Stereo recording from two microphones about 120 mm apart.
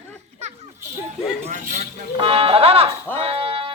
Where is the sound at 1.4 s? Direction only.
90° right.